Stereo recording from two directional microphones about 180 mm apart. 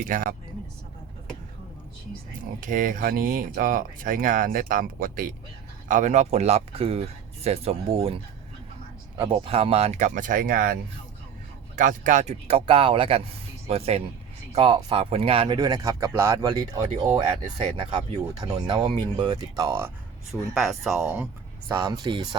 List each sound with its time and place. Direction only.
0.1 s speech: 50° right (ahead or behind)
2.6 s speech: 50° right (ahead or behind)
11.8 s speech: 45° right (ahead or behind); by 19.9 s 15° right (ahead or behind)
20.5 s speech: centre (ahead or behind)
21.7 s speech: 15° right (ahead or behind)